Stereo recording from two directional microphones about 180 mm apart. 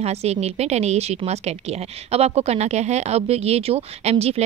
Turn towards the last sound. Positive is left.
turn(degrees=-35)  # may be behind; listen again after turning